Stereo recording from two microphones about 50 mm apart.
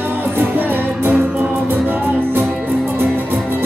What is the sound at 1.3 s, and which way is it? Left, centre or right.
Music, right.